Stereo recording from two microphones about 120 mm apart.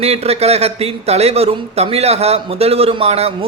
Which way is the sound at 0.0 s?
60° right (ahead or behind).